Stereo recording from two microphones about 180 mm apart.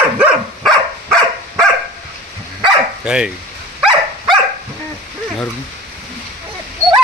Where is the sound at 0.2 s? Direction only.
5° right (ahead or behind).